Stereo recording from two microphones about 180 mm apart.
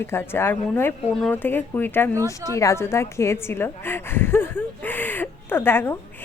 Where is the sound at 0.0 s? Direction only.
10° left (ahead or behind).